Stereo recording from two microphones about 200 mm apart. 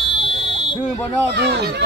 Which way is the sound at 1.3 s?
55° right (ahead or behind).